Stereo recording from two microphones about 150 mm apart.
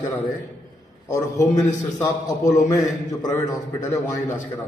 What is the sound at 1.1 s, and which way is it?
A man's voice, 20° left (ahead or behind).